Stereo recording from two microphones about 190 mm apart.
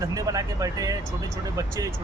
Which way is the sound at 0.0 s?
20° right (ahead or behind).